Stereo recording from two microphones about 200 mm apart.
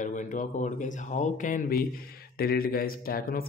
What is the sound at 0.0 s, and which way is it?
Speech, 40° left (ahead or behind).